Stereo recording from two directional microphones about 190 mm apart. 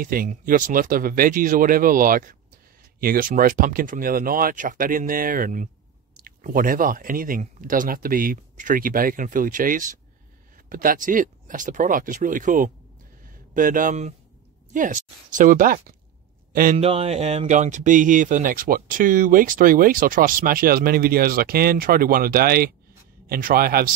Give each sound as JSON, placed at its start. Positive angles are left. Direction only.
{"t": 0.0, "sound": "speech", "side_deg": -50}
{"t": 16.7, "sound": "speech", "side_deg": -30}